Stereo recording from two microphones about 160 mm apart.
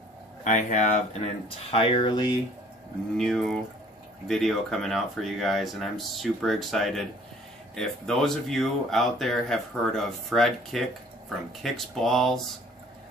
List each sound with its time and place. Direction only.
0.4 s speech: 50° left (ahead or behind)
1.7 s speech: 35° left (ahead or behind)
3.2 s speech: 5° left (ahead or behind)